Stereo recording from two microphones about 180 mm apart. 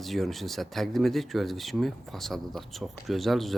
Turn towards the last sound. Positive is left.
turn(degrees=0)  # may be behind; listen again after turning